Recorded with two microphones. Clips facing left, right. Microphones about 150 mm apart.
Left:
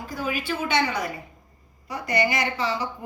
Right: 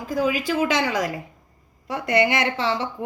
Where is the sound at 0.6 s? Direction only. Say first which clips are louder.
Right 2 dB; 90° right.